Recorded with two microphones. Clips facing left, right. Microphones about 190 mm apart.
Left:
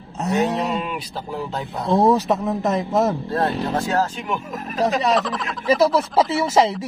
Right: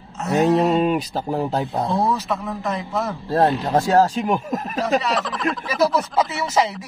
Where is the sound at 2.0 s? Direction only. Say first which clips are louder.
Left 10 dB; 40° left (ahead or behind).